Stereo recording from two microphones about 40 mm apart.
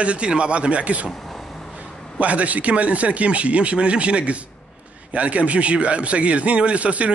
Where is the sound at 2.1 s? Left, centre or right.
Right.